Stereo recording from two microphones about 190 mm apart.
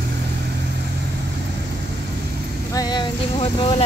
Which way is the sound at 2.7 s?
20° left (ahead or behind).